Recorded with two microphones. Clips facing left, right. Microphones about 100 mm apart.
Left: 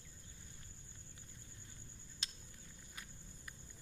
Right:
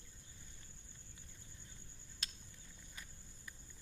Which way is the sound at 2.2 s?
25° left (ahead or behind).